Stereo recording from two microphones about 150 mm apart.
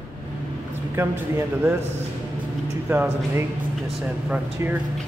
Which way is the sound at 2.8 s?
15° right (ahead or behind).